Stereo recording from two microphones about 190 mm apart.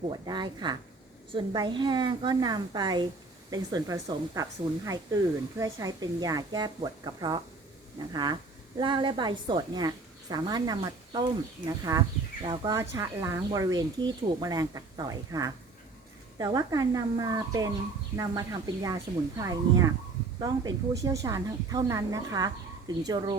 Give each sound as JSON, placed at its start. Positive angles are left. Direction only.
{"t": 0.1, "sound": "a woman's voice", "side_deg": -25}